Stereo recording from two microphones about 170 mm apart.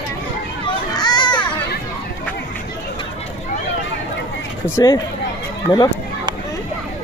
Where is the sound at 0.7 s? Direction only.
25° left (ahead or behind).